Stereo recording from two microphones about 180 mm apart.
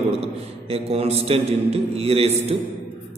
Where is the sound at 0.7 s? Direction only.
35° right (ahead or behind).